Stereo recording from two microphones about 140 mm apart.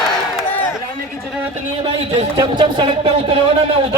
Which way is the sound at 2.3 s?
35° right (ahead or behind).